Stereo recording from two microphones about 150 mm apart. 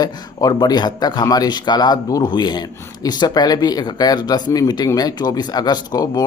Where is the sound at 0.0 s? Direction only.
25° left (ahead or behind).